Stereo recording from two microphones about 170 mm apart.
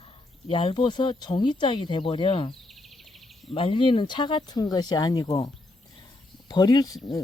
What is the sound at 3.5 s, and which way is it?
Speech, 30° left (ahead or behind).